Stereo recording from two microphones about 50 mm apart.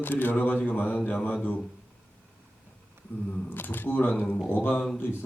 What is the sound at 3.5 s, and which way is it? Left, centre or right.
A man's voice, left.